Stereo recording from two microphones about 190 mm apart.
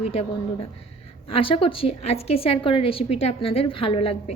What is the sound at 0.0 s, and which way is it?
Speech, 35° left (ahead or behind).